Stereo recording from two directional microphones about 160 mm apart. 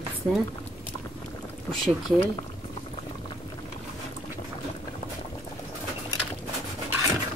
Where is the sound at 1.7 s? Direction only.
Centre (ahead or behind).